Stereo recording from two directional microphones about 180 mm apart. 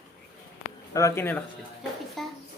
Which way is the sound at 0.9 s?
15° left (ahead or behind).